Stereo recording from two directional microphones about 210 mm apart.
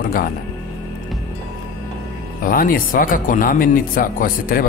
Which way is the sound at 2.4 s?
45° left (ahead or behind).